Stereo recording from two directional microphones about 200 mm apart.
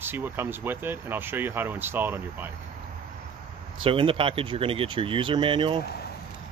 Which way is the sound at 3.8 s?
25° right (ahead or behind).